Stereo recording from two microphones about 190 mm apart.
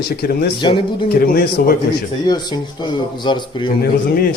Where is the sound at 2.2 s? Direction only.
20° left (ahead or behind).